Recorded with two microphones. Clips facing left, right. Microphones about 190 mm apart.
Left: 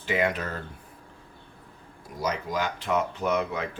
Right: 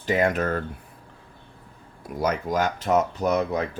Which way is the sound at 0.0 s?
40° right (ahead or behind).